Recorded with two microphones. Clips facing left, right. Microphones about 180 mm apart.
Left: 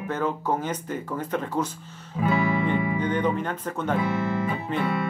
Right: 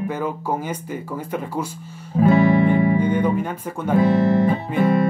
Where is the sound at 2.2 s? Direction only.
45° right (ahead or behind).